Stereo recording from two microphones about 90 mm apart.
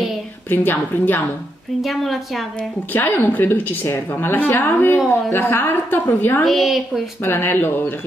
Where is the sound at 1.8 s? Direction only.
Centre (ahead or behind).